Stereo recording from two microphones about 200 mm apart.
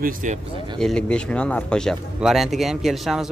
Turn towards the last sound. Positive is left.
turn(degrees=0)  # may be behind; listen again after turning